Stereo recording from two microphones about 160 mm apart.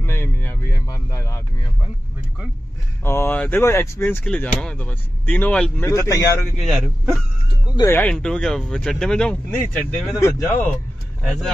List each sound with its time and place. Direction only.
0.0 s a sound: 15° left (ahead or behind)
3.0 s a man's voice: 15° left (ahead or behind)
6.5 s speech: centre (ahead or behind)
7.7 s speech: 15° left (ahead or behind)
11.2 s speech: 5° left (ahead or behind)